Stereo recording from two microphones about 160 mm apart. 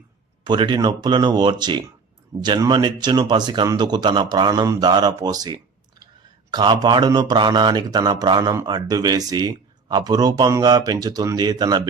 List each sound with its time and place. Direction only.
0.4 s speech: 30° right (ahead or behind)